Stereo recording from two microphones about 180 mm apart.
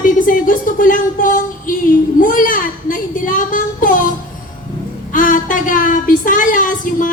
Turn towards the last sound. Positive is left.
turn(degrees=45)  # may be behind; listen again after turning